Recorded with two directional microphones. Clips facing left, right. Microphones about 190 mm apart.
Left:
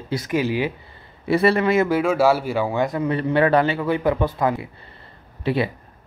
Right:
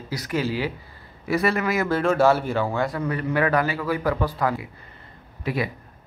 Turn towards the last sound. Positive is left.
turn(degrees=30)  # may be behind; listen again after turning